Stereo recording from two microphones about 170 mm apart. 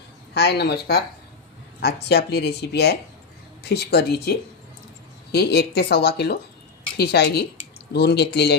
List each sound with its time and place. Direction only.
0.3 s speech: 75° left (ahead or behind)